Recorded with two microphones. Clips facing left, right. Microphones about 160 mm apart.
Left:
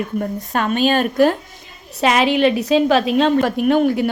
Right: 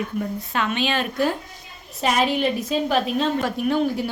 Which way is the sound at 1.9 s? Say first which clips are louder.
Left 5 dB; 90° left.